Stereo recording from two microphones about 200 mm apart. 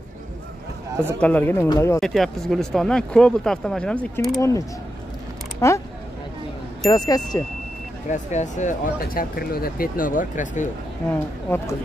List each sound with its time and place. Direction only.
1.2 s speech: 10° left (ahead or behind)
2.0 s speech: centre (ahead or behind)
4.4 s speech: 15° left (ahead or behind)
6.8 s speech: 20° left (ahead or behind)
8.1 s speech: 35° left (ahead or behind)
11.1 s speech: 10° left (ahead or behind)